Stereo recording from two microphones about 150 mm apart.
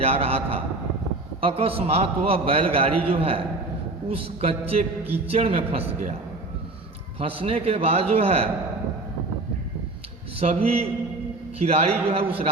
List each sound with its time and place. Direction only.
0.0 s a man's voice: 40° right (ahead or behind)
7.2 s a man's voice: 40° right (ahead or behind)
10.4 s a man's voice: 45° right (ahead or behind)